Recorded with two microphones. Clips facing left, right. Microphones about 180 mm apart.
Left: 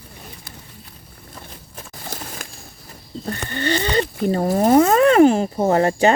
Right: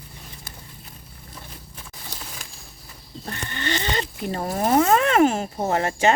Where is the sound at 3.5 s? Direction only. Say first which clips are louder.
Left 6 dB; 35° left (ahead or behind).